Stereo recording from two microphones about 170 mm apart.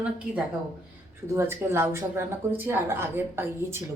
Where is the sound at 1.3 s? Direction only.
15° right (ahead or behind).